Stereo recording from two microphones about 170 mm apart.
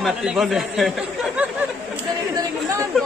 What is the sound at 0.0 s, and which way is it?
A man's voice, 5° right (ahead or behind).